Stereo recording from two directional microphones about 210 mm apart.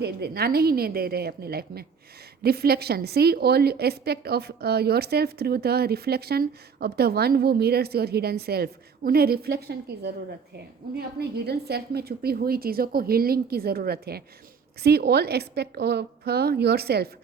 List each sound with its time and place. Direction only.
0.0 s a woman's voice: 50° right (ahead or behind)